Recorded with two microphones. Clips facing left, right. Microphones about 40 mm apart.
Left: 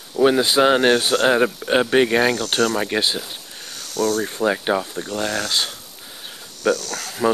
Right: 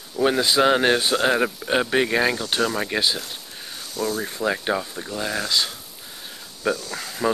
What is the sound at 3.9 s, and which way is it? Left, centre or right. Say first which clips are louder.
Speech: left 5 dB; left.